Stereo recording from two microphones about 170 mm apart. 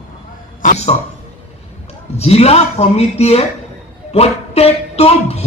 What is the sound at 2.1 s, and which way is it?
A woman's voice, 35° left (ahead or behind).